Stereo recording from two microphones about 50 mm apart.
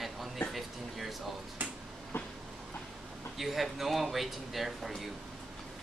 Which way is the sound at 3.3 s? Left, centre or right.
Centre.